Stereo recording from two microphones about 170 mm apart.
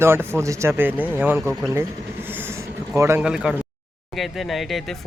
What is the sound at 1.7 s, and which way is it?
Vehicle, 15° right (ahead or behind).